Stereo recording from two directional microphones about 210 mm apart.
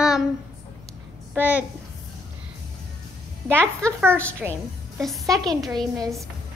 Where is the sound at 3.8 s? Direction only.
5° left (ahead or behind).